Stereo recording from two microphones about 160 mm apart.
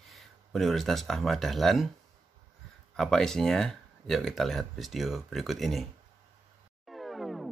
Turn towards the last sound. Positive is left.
turn(degrees=0)  # may be behind; listen again after turning